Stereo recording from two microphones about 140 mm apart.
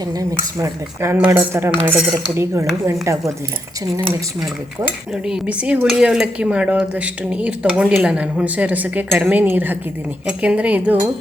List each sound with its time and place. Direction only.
0.1 s speech: 25° right (ahead or behind)
1.1 s speech: 10° right (ahead or behind)
4.9 s speech: 5° right (ahead or behind)